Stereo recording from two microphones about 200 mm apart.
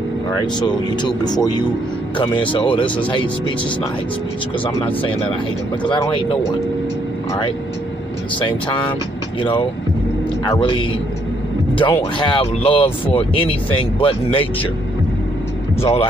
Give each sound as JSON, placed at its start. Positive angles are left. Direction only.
{"t": 0.3, "sound": "speech", "side_deg": 20}
{"t": 5.9, "sound": "speech", "side_deg": 25}
{"t": 8.4, "sound": "speech", "side_deg": 25}
{"t": 15.8, "sound": "speech", "side_deg": 30}